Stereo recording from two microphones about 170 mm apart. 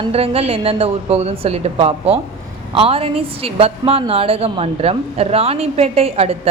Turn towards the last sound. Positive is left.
turn(degrees=-35)  # may be behind; listen again after turning